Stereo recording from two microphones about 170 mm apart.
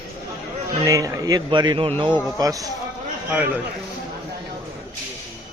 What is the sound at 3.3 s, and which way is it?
Speech, 10° right (ahead or behind).